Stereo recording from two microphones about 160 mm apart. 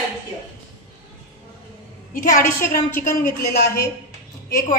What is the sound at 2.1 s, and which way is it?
Speech, 55° left (ahead or behind).